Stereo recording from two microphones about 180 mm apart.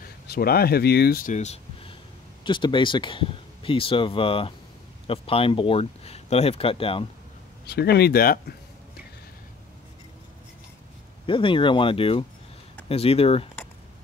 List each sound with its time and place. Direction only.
0.3 s speech: 60° left (ahead or behind); by 7.1 s 30° left (ahead or behind)
7.6 s speech: 65° left (ahead or behind)
11.2 s speech: 30° left (ahead or behind)